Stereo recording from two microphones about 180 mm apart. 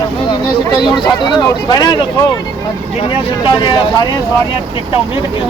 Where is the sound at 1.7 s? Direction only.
25° left (ahead or behind).